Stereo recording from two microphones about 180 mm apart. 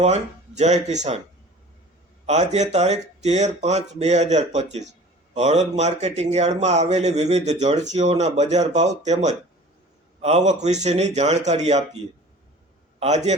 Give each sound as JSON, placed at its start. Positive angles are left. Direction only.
{"t": 0.0, "sound": "speech", "side_deg": -40}
{"t": 2.2, "sound": "speech", "side_deg": -40}